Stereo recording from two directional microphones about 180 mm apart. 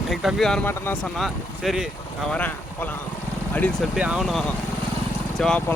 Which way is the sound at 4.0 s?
5° right (ahead or behind).